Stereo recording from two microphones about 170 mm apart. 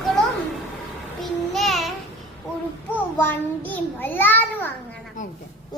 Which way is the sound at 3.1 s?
10° left (ahead or behind).